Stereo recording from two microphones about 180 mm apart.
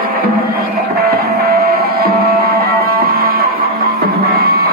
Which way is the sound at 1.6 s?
55° right (ahead or behind).